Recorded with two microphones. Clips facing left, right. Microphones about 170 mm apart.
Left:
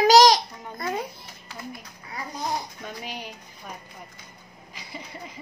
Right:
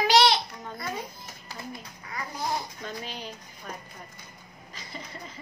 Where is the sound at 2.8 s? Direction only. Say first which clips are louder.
Left 1 dB; 10° left (ahead or behind).